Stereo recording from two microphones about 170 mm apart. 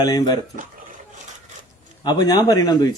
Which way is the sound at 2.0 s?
25° left (ahead or behind).